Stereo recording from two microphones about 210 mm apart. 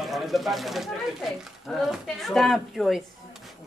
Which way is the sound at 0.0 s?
Centre (ahead or behind).